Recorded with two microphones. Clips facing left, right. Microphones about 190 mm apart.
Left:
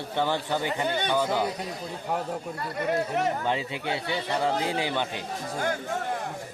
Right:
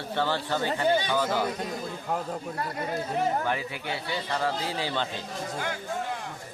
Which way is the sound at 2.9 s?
70° left (ahead or behind).